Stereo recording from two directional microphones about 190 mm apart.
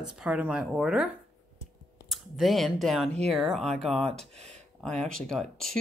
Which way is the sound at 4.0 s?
35° right (ahead or behind).